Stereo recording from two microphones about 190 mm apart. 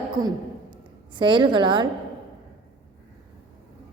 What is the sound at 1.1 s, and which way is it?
Speech, 25° right (ahead or behind).